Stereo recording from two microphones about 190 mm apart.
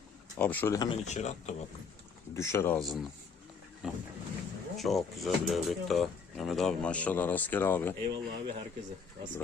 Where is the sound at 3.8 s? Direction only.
5° right (ahead or behind); by 7.9 s 10° left (ahead or behind).